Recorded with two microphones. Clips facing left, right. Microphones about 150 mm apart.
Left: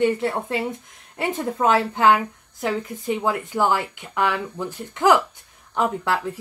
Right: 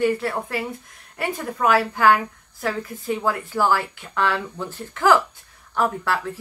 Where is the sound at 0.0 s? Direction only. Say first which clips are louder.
Left 1 dB; 20° left (ahead or behind).